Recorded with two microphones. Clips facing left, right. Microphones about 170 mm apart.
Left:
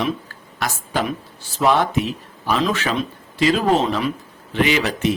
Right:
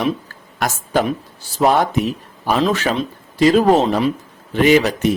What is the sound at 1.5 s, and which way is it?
Speech, 40° right (ahead or behind).